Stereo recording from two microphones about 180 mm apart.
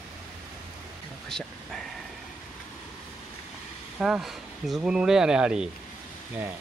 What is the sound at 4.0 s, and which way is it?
Speech, centre (ahead or behind).